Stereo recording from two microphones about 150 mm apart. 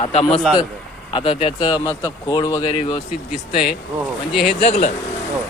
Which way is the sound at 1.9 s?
25° left (ahead or behind).